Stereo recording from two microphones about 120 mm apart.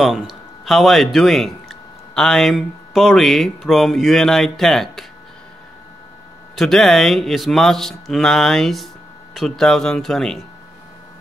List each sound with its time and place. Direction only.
0.0 s a man's voice: 5° right (ahead or behind)
6.5 s speech: 5° left (ahead or behind)